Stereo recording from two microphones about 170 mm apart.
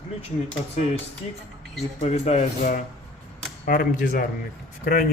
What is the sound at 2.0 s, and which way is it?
Speech, 40° left (ahead or behind).